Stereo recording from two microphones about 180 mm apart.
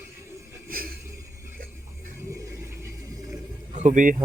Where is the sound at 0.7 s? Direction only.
55° right (ahead or behind).